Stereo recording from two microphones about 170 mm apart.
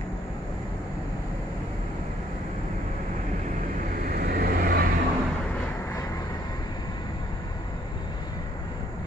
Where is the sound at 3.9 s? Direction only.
60° right (ahead or behind).